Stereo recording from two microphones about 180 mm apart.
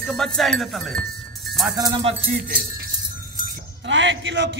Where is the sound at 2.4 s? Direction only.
55° right (ahead or behind).